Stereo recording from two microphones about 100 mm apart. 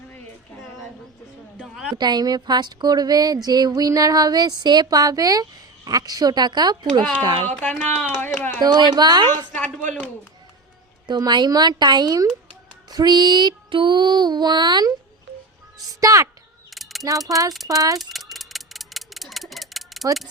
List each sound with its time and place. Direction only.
1.5 s a sound: 5° right (ahead or behind)
2.0 s speech: 45° right (ahead or behind)
7.5 s speech: 10° left (ahead or behind)
8.6 s music: 45° right (ahead or behind)
11.0 s music: 45° right (ahead or behind)
15.9 s speech: 35° right (ahead or behind)
18.0 s mechanisms: centre (ahead or behind)